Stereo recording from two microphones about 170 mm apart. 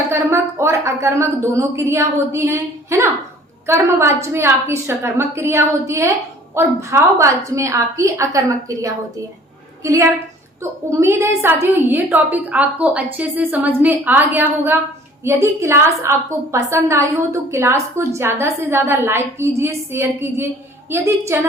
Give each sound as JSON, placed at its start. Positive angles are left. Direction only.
{"t": 0.1, "sound": "a woman's voice", "side_deg": -15}